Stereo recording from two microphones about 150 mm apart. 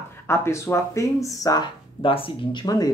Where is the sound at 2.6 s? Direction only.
25° left (ahead or behind).